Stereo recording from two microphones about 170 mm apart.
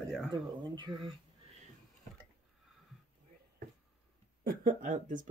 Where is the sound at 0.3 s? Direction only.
25° right (ahead or behind).